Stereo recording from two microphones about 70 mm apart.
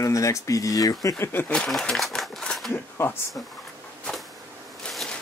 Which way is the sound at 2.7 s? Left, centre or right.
Left.